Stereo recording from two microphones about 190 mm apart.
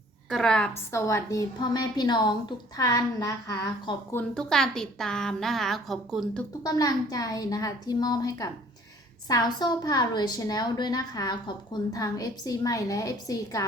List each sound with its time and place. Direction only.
0.3 s a woman's voice: centre (ahead or behind)
6.6 s a woman's voice: 20° left (ahead or behind)